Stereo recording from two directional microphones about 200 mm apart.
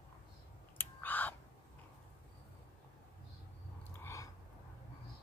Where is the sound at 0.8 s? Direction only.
10° left (ahead or behind).